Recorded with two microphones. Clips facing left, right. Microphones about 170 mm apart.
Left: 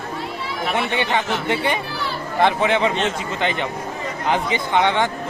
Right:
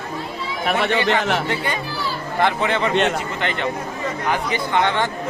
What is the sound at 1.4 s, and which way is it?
A man's voice, 20° left (ahead or behind).